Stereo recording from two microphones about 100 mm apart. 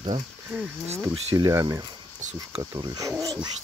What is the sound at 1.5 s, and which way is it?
Speech, 30° right (ahead or behind).